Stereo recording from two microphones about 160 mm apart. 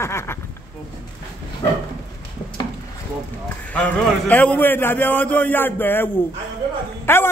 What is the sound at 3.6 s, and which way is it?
A man's voice, 10° left (ahead or behind).